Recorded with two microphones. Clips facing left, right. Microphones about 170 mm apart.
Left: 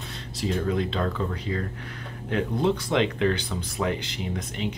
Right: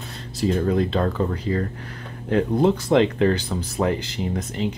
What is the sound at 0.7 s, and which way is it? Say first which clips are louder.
Speech: right 5 dB; 45° right (ahead or behind).